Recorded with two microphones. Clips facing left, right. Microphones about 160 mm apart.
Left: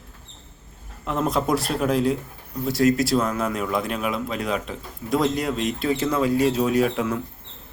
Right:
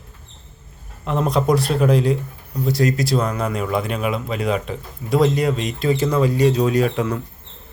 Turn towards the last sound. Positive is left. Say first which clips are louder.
# right 2 dB
turn(degrees=0)  # may be behind; listen again after turning